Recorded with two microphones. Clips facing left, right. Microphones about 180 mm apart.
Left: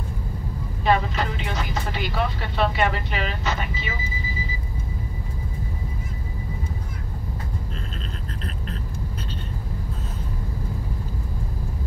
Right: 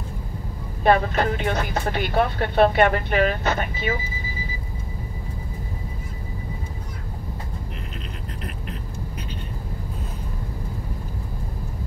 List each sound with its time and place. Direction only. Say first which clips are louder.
0.8 s speech: right 3 dB; 55° right (ahead or behind)